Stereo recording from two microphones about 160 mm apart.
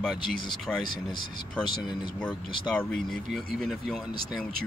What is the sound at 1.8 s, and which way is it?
Speech, 30° left (ahead or behind).